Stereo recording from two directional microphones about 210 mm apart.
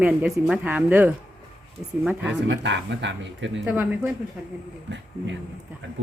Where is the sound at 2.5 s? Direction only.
55° right (ahead or behind).